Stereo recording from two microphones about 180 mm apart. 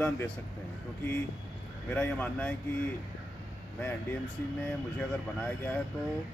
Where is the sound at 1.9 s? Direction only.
10° left (ahead or behind).